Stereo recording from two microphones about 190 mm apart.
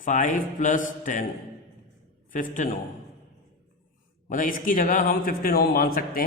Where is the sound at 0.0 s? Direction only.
40° left (ahead or behind).